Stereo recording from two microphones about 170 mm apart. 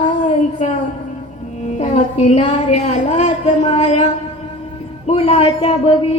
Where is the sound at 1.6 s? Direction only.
45° left (ahead or behind).